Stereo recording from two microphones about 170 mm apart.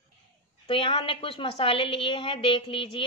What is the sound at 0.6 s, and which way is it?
A woman's voice, 30° left (ahead or behind).